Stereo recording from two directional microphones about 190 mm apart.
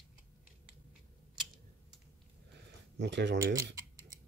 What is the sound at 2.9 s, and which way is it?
Speech, 65° right (ahead or behind).